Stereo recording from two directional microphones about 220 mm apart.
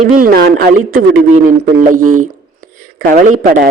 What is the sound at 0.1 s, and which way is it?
A man's voice, 40° right (ahead or behind).